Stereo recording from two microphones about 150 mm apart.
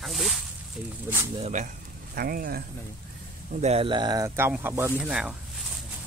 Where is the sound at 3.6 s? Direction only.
40° right (ahead or behind); by 5.3 s 5° right (ahead or behind).